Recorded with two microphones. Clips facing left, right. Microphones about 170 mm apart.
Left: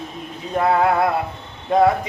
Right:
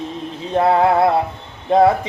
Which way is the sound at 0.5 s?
25° right (ahead or behind).